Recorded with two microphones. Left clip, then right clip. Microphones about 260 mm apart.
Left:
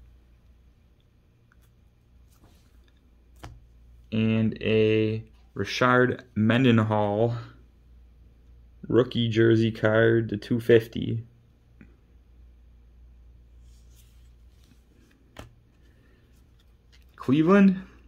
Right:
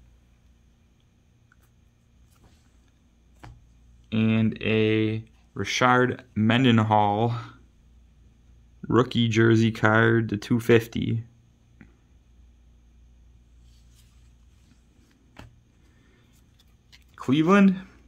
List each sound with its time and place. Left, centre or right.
4.1 s speech: centre
8.8 s speech: right
11.8 s a sound: centre
17.1 s speech: centre